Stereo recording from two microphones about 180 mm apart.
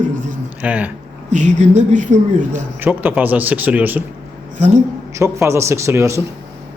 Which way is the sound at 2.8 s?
10° right (ahead or behind).